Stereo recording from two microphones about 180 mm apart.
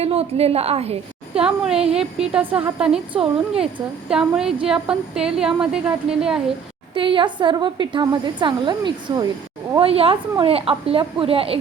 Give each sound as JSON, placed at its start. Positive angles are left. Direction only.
{"t": 0.0, "sound": "a woman's voice", "side_deg": -35}
{"t": 1.4, "sound": "a woman's voice", "side_deg": -5}
{"t": 6.9, "sound": "a woman's voice", "side_deg": -30}